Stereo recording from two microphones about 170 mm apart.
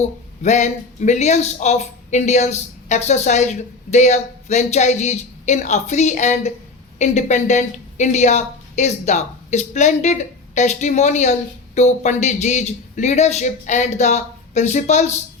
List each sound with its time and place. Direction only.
0.0 s a woman's voice: 45° left (ahead or behind)